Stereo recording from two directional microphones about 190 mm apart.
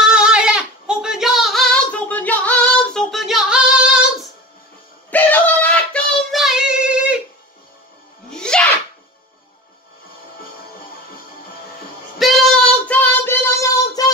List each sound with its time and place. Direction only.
0.1 s female singing: 5° right (ahead or behind)
5.1 s child singing: 10° left (ahead or behind)
8.3 s sneeze: 5° left (ahead or behind)
12.2 s child singing: centre (ahead or behind)
14.0 s a sound: 20° left (ahead or behind)